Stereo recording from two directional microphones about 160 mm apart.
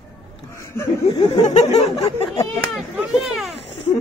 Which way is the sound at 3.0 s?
Centre (ahead or behind).